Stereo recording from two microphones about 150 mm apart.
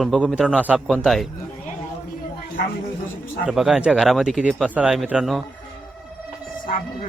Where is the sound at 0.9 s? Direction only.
Centre (ahead or behind).